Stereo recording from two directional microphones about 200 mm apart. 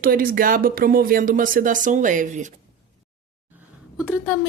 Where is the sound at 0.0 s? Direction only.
45° right (ahead or behind).